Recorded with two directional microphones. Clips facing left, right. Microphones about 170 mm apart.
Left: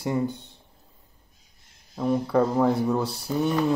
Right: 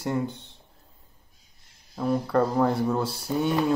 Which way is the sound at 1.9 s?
5° left (ahead or behind).